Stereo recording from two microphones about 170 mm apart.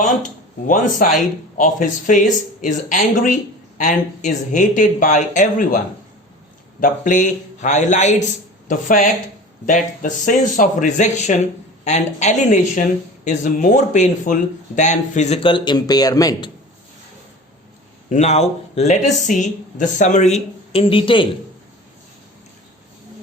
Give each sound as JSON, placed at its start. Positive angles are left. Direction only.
{"t": 0.0, "sound": "a man's voice", "side_deg": 45}
{"t": 18.1, "sound": "speech", "side_deg": 40}